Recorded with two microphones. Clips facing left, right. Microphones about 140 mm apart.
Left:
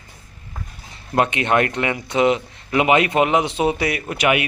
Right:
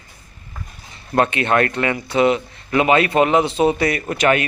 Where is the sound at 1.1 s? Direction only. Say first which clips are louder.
Right 1 dB; 20° left (ahead or behind).